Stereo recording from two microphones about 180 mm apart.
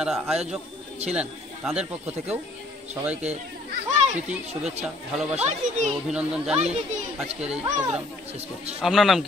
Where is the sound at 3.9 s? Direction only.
40° right (ahead or behind).